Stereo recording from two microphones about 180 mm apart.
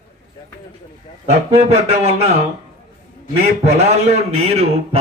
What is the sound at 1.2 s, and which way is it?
Speech, 35° right (ahead or behind).